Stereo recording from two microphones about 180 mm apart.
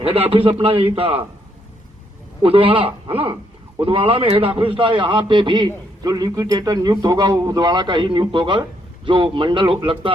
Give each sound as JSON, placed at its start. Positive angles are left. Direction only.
{"t": 0.0, "sound": "a man's voice", "side_deg": -30}
{"t": 2.4, "sound": "a man's voice", "side_deg": -30}